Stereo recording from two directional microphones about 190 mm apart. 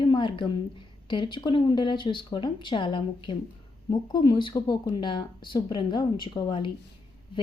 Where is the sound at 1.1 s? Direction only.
25° left (ahead or behind).